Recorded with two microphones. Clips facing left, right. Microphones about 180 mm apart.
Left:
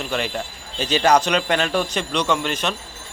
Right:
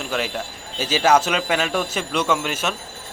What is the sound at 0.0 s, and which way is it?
A man's voice, centre (ahead or behind).